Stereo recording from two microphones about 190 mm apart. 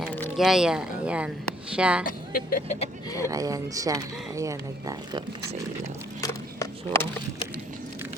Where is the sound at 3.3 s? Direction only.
20° right (ahead or behind).